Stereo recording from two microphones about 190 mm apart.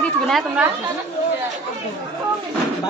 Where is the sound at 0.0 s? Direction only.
Centre (ahead or behind).